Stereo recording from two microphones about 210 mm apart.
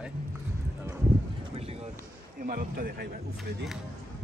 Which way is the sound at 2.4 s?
40° right (ahead or behind).